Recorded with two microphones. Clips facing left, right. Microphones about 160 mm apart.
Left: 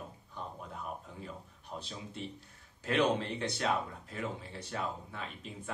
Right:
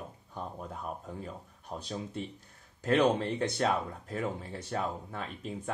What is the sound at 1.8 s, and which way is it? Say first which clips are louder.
Speech: right 7 dB; 45° right (ahead or behind).